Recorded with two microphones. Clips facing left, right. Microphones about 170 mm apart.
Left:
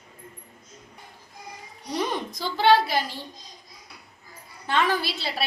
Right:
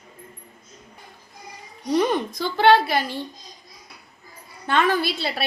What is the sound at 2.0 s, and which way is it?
A woman's voice, 60° right (ahead or behind).